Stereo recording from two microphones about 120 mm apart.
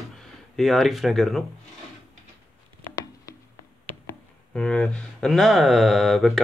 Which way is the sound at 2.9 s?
30° left (ahead or behind).